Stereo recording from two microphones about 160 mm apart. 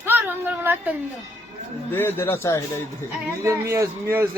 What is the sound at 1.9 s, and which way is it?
Speech, 15° left (ahead or behind).